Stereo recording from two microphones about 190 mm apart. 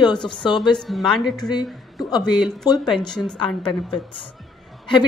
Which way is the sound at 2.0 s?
20° left (ahead or behind).